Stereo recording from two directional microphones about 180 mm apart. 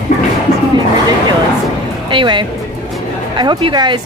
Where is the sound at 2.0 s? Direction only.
25° right (ahead or behind).